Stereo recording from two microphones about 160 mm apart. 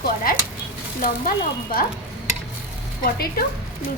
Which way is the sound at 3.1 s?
70° left (ahead or behind).